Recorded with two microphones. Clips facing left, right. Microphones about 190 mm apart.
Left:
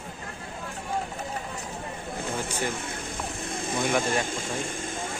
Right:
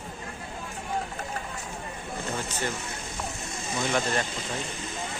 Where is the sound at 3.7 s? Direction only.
55° left (ahead or behind).